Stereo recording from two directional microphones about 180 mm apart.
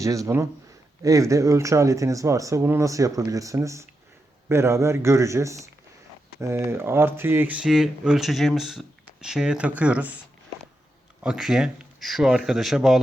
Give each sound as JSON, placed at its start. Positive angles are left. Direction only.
{"t": 0.0, "sound": "speech", "side_deg": -20}
{"t": 11.2, "sound": "speech", "side_deg": -5}